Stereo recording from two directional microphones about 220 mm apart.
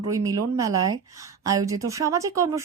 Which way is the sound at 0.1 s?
15° right (ahead or behind).